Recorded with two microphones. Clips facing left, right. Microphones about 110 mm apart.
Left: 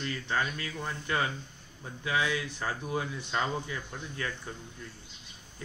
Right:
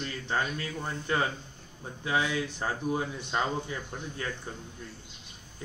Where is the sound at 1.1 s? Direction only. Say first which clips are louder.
Right 2 dB; 25° right (ahead or behind).